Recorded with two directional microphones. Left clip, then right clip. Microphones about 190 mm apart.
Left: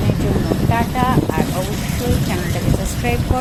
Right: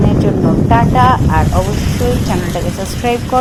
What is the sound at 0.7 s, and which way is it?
Speech, 25° right (ahead or behind).